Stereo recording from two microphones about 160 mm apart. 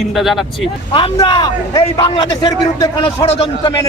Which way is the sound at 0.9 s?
25° left (ahead or behind).